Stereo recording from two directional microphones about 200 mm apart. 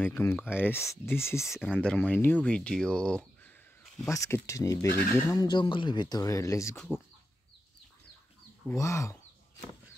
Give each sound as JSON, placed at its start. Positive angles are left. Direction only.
{"t": 0.0, "sound": "speech", "side_deg": 10}
{"t": 1.5, "sound": "speech", "side_deg": 0}
{"t": 4.1, "sound": "speech", "side_deg": 15}
{"t": 8.6, "sound": "speech", "side_deg": 15}